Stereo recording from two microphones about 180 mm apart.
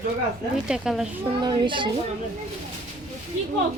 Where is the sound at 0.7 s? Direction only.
5° right (ahead or behind).